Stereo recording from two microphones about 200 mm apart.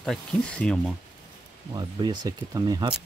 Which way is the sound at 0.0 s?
5° left (ahead or behind).